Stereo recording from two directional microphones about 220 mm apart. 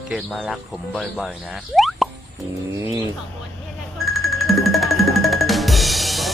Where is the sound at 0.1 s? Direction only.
Centre (ahead or behind).